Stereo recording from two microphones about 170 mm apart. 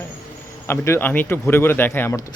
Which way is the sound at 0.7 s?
15° left (ahead or behind).